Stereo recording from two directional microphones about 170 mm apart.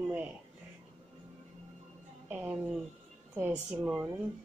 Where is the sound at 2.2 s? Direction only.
10° right (ahead or behind).